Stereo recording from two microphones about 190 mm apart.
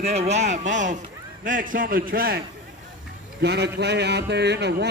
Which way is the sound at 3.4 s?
60° right (ahead or behind).